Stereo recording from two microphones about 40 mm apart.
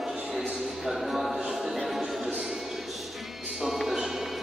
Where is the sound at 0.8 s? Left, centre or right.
Centre.